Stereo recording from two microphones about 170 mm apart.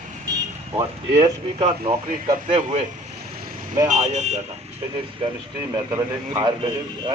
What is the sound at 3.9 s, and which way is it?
Speech, 40° right (ahead or behind).